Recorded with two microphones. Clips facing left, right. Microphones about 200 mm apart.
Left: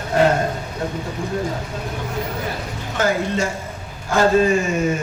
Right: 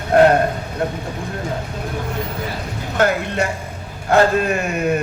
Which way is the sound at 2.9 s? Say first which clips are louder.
Right 2 dB; 60° right (ahead or behind).